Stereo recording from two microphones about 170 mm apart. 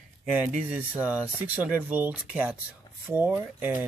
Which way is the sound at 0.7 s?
10° right (ahead or behind).